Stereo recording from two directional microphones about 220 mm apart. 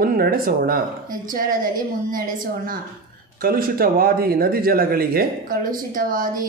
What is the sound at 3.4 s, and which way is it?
Speech, 40° right (ahead or behind).